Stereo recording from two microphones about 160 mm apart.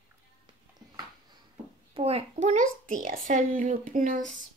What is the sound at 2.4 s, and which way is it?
A child's voice, 50° right (ahead or behind).